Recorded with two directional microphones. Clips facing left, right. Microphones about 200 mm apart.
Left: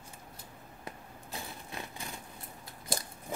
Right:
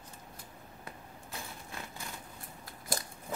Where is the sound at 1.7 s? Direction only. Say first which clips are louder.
Left 2 dB; 20° left (ahead or behind).